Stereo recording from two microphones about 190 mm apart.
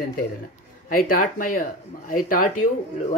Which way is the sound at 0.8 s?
45° left (ahead or behind).